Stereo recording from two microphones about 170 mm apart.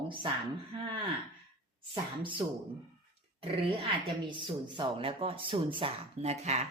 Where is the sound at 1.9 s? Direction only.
30° right (ahead or behind).